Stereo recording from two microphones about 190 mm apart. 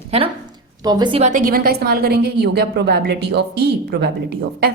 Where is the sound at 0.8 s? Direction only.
20° right (ahead or behind).